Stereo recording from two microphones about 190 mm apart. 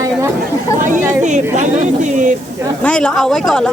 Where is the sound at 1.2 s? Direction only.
40° right (ahead or behind).